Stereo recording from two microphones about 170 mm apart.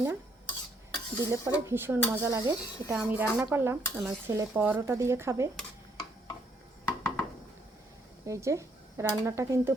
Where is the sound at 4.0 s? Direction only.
5° right (ahead or behind).